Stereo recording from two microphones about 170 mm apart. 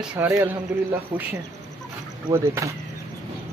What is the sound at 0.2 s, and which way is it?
Speech, 15° right (ahead or behind).